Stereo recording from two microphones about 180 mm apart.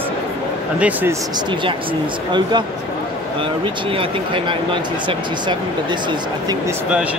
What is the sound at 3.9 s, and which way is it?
Speech, 30° right (ahead or behind).